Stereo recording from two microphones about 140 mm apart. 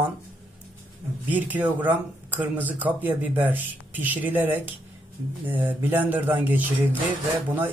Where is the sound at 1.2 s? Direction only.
10° right (ahead or behind).